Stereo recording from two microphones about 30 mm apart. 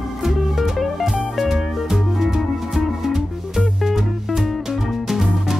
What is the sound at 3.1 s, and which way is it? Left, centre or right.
Music, centre.